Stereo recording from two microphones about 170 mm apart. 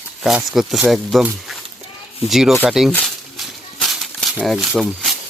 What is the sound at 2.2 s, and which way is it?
Speech, centre (ahead or behind).